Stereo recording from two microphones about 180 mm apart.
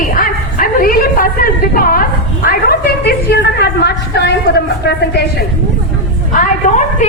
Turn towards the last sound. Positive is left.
turn(degrees=40)  # may be behind; listen again after turning